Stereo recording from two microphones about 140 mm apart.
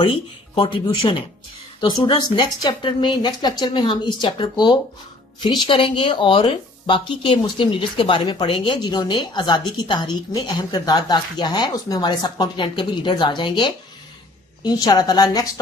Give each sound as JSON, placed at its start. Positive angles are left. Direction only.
{"t": 0.0, "sound": "a woman's voice", "side_deg": 40}